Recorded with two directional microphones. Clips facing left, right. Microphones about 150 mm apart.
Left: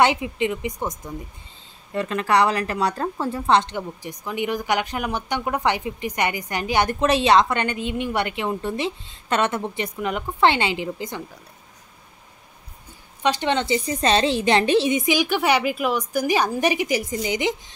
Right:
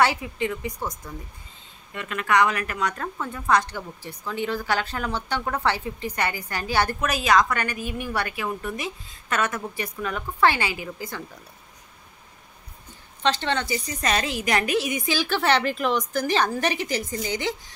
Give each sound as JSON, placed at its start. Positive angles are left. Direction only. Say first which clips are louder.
{"t": 0.0, "sound": "a woman's voice", "louder": "left 3 dB", "side_deg": 20}
{"t": 2.0, "sound": "a woman's voice", "louder": "left 3 dB", "side_deg": 35}
{"t": 13.2, "sound": "a woman's voice", "louder": "left 3 dB", "side_deg": 15}